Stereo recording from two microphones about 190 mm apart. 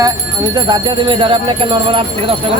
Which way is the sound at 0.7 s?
25° right (ahead or behind).